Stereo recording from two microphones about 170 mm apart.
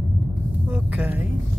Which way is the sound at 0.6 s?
10° right (ahead or behind).